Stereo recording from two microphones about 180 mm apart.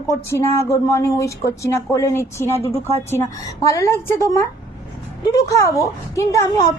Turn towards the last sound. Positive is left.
turn(degrees=15)  # may be behind; listen again after turning